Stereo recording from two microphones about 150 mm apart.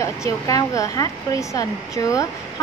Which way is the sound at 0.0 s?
20° left (ahead or behind).